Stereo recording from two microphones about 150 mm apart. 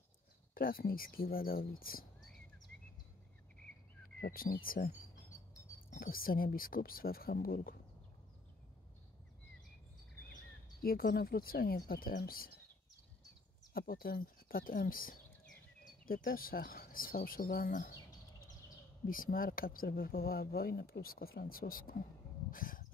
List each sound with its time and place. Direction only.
0.6 s speech: 75° left (ahead or behind)
4.2 s speech: 75° left (ahead or behind)
10.8 s speech: 75° left (ahead or behind)
13.7 s speech: 75° left (ahead or behind)
19.0 s speech: 70° left (ahead or behind)
22.5 s a sound: 70° left (ahead or behind)